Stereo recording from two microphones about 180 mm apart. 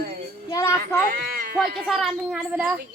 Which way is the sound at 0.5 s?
15° left (ahead or behind).